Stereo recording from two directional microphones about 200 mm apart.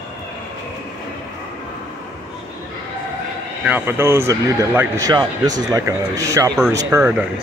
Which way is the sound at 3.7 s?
10° right (ahead or behind).